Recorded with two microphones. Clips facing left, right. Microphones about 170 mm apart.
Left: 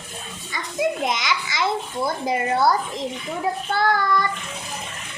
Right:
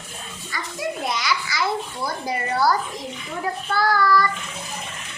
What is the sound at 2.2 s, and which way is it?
Child singing, 20° left (ahead or behind).